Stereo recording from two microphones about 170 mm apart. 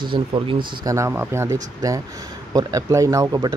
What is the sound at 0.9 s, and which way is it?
Speech, 15° right (ahead or behind).